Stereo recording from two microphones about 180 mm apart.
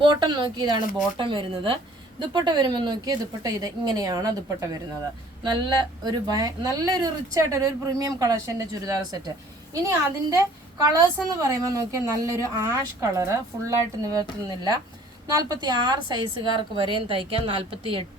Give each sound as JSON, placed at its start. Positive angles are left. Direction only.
{"t": 0.0, "sound": "speech", "side_deg": -25}
{"t": 10.8, "sound": "speech", "side_deg": -20}